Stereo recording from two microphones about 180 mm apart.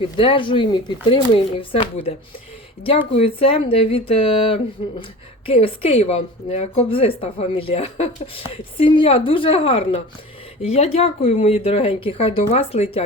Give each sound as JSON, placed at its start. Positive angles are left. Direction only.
{"t": 0.2, "sound": "a woman's voice", "side_deg": 30}